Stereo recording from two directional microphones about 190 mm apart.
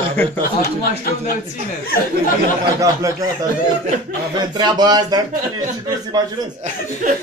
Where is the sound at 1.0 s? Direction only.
50° left (ahead or behind).